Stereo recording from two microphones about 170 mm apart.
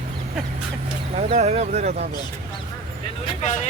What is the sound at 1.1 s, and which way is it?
Speech, 40° right (ahead or behind).